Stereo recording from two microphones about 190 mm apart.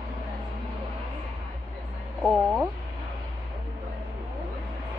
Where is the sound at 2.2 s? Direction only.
5° right (ahead or behind).